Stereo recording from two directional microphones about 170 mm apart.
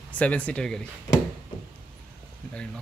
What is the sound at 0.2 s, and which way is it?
Speech, 10° left (ahead or behind).